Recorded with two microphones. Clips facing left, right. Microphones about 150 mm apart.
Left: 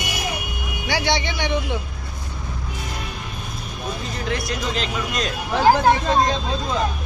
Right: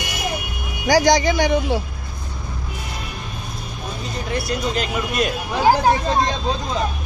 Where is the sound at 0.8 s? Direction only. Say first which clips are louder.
Right 8 dB; 40° right (ahead or behind).